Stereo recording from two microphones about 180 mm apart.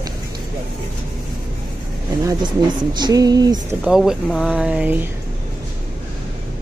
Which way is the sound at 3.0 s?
20° right (ahead or behind).